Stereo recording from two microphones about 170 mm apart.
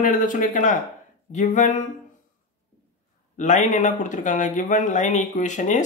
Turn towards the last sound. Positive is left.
turn(degrees=45)  # may be behind; listen again after turning